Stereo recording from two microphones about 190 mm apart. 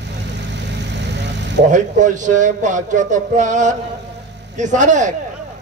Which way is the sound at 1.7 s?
40° right (ahead or behind).